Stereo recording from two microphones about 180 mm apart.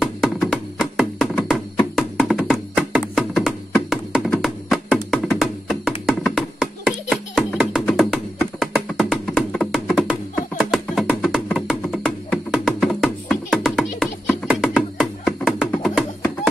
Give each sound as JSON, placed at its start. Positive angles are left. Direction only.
{"t": 0.0, "sound": "music", "side_deg": 0}